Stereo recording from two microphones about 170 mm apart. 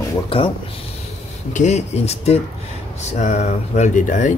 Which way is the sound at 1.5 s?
40° left (ahead or behind).